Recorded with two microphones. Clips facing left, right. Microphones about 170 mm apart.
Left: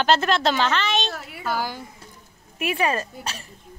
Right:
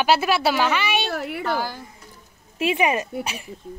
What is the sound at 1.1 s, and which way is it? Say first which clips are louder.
Speech: right 8 dB; 65° right (ahead or behind).